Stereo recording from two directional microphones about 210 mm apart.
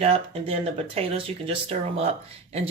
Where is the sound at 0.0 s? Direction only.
25° right (ahead or behind).